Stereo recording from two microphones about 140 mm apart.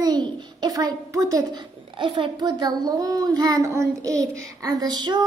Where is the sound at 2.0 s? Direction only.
40° right (ahead or behind).